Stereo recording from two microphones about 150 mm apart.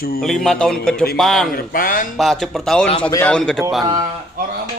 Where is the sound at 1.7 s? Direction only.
70° left (ahead or behind).